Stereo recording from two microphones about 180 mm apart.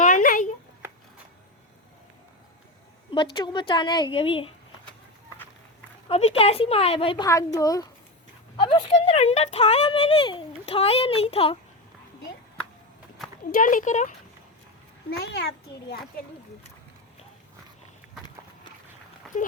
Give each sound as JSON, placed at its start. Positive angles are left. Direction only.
{"t": 0.0, "sound": "a sound", "side_deg": 45}
{"t": 3.1, "sound": "a woman's voice", "side_deg": 25}
{"t": 6.1, "sound": "speech", "side_deg": 35}
{"t": 7.3, "sound": "a woman's voice", "side_deg": 20}
{"t": 8.5, "sound": "speech", "side_deg": 30}
{"t": 13.5, "sound": "speech", "side_deg": 50}
{"t": 15.1, "sound": "a child's voice", "side_deg": 70}